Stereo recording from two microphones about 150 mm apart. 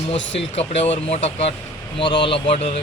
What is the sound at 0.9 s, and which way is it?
Speech, 45° left (ahead or behind).